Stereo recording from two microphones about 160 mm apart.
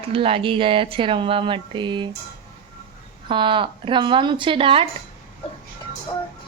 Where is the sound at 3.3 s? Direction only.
30° right (ahead or behind).